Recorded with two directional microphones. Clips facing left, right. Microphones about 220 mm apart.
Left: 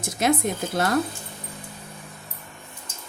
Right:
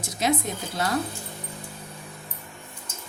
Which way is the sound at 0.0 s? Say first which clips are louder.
Left 3 dB; 50° left (ahead or behind).